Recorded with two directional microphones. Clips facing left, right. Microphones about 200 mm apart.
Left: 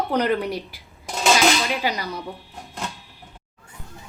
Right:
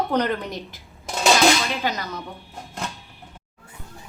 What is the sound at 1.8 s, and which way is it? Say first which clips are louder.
Speech: left 1 dB; 10° left (ahead or behind).